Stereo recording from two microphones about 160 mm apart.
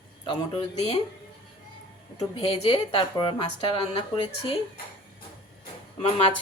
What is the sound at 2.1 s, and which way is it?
A woman's voice, 35° left (ahead or behind).